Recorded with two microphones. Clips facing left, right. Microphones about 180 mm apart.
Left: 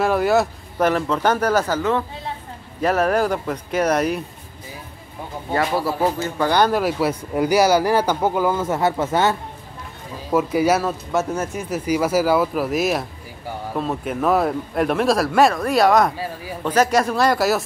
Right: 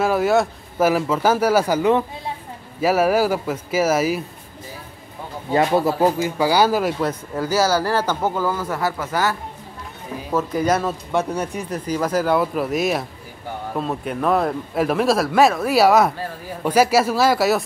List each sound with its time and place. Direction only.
0.0 s speech: centre (ahead or behind)
5.5 s speech: 20° right (ahead or behind); by 9.4 s 25° left (ahead or behind)
10.3 s speech: 10° left (ahead or behind)